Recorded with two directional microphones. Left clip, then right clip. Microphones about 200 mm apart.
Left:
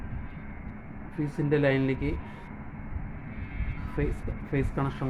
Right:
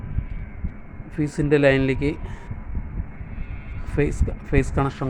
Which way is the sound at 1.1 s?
50° right (ahead or behind).